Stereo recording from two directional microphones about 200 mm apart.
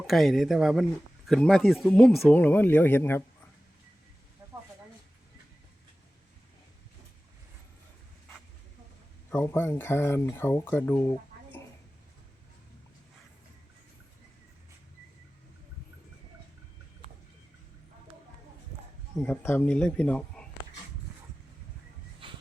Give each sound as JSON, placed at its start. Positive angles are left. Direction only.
{"t": 0.1, "sound": "speech", "side_deg": 0}
{"t": 9.3, "sound": "speech", "side_deg": 10}
{"t": 19.2, "sound": "speech", "side_deg": 5}
{"t": 22.2, "sound": "a sound", "side_deg": -25}